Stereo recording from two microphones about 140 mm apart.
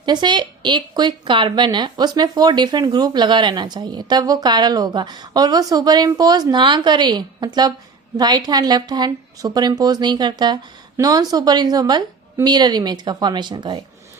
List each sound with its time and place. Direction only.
0.0 s a woman's voice: 30° right (ahead or behind)